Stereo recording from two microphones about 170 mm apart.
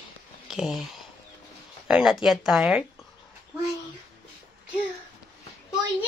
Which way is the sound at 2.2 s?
Centre (ahead or behind).